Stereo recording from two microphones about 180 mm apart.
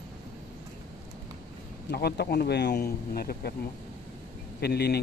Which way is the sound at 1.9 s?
60° left (ahead or behind).